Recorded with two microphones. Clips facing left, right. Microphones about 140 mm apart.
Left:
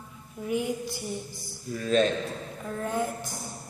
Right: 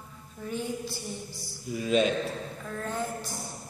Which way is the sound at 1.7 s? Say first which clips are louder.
Left 1 dB; 10° right (ahead or behind).